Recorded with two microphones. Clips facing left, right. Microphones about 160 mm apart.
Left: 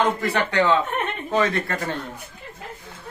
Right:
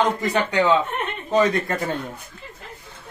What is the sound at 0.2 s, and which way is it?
Speech, 15° right (ahead or behind).